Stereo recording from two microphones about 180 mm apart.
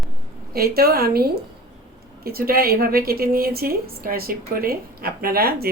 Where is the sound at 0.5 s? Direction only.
55° right (ahead or behind).